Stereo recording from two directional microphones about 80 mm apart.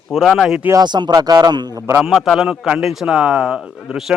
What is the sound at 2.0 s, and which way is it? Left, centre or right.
Speech, centre.